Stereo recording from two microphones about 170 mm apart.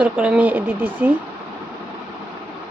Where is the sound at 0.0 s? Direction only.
5° right (ahead or behind).